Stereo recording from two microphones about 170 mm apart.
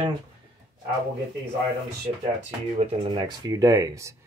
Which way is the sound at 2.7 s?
35° right (ahead or behind).